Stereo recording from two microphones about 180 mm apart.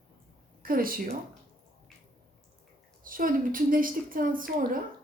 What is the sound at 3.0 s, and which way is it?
A woman's voice, 50° right (ahead or behind).